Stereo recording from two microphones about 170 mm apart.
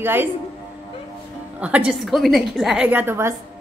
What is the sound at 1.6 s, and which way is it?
A woman's voice, 5° right (ahead or behind).